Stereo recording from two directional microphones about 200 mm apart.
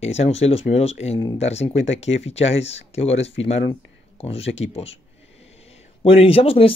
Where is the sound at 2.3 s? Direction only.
30° left (ahead or behind).